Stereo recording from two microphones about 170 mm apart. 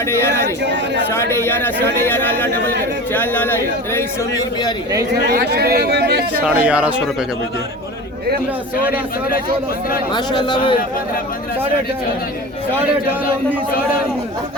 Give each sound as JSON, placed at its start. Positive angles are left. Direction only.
{"t": 0.6, "sound": "speech", "side_deg": -90}
{"t": 1.1, "sound": "speech", "side_deg": 15}
{"t": 5.3, "sound": "speech", "side_deg": -70}
{"t": 6.4, "sound": "speech", "side_deg": -10}
{"t": 10.1, "sound": "speech", "side_deg": 25}